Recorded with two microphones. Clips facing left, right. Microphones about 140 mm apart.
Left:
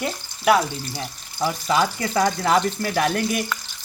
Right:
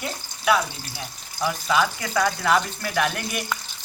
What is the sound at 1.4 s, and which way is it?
Speech, 35° left (ahead or behind).